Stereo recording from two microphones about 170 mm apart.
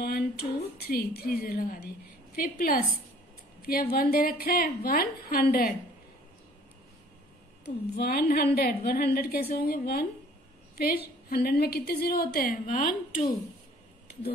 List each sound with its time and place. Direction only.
0.0 s a woman's voice: 65° left (ahead or behind)
7.6 s a woman's voice: 65° left (ahead or behind); by 13.3 s 50° left (ahead or behind)